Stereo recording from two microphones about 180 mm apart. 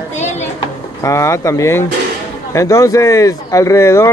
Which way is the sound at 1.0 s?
15° left (ahead or behind).